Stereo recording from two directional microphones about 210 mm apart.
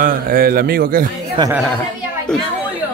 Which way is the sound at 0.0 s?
45° right (ahead or behind).